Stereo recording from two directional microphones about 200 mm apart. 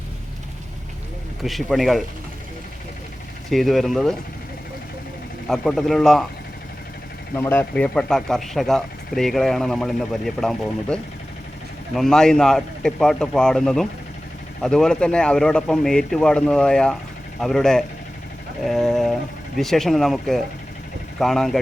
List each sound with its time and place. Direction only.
1.5 s speech: centre (ahead or behind)
3.5 s speech: centre (ahead or behind)
5.5 s speech: centre (ahead or behind)
7.3 s speech: 10° left (ahead or behind)